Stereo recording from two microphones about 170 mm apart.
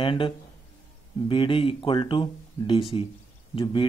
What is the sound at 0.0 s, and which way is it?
Speech, 30° left (ahead or behind).